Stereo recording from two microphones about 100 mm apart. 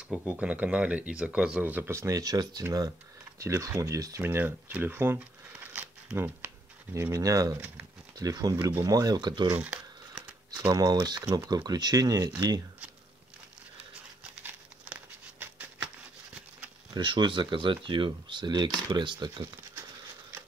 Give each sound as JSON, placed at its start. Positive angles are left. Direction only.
{"t": 0.1, "sound": "speech", "side_deg": -15}
{"t": 4.2, "sound": "crumpling", "side_deg": -20}
{"t": 6.1, "sound": "speech", "side_deg": -25}
{"t": 9.5, "sound": "crumpling", "side_deg": -10}
{"t": 10.7, "sound": "speech", "side_deg": -40}
{"t": 14.4, "sound": "patter", "side_deg": -20}
{"t": 16.9, "sound": "speech", "side_deg": -55}